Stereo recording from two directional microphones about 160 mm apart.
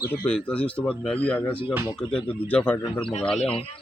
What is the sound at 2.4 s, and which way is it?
Speech, 10° left (ahead or behind).